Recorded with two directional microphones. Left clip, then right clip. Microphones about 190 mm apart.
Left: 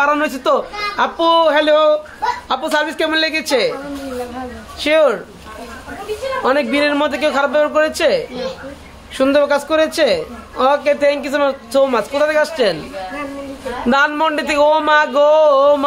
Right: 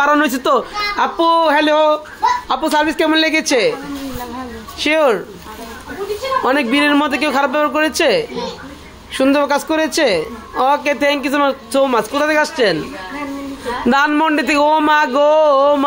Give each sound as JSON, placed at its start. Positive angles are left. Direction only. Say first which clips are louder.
{"t": 0.0, "sound": "a woman's voice", "louder": "right 2 dB", "side_deg": -30}
{"t": 4.7, "sound": "speech", "louder": "left 1 dB", "side_deg": -15}
{"t": 6.4, "sound": "a woman's voice", "louder": "left 1 dB", "side_deg": -20}
{"t": 13.8, "sound": "a woman's voice", "louder": "right 1 dB", "side_deg": -25}